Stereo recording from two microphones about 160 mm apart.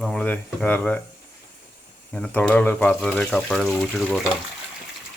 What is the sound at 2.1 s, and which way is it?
Speech, 10° left (ahead or behind).